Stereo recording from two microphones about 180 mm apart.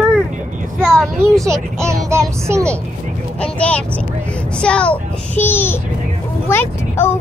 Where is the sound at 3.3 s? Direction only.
5° left (ahead or behind).